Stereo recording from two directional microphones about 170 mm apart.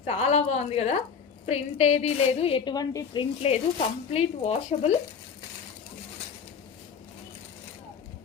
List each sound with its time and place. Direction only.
0.0 s a woman's voice: 35° left (ahead or behind)